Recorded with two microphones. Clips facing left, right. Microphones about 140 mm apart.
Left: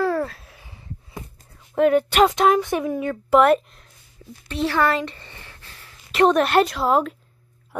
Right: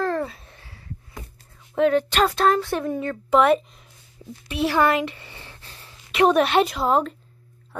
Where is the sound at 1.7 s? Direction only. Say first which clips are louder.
Left 2 dB; 5° left (ahead or behind).